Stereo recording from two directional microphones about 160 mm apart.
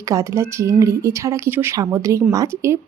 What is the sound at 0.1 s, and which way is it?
A woman's voice, 20° right (ahead or behind).